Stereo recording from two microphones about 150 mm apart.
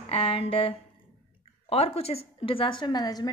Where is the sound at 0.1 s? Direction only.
40° left (ahead or behind).